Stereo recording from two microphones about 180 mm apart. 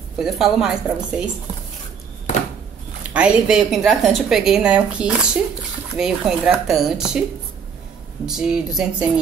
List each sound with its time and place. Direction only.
0.2 s a woman's voice: centre (ahead or behind)
3.1 s a woman's voice: 5° right (ahead or behind)
8.3 s a woman's voice: 5° right (ahead or behind)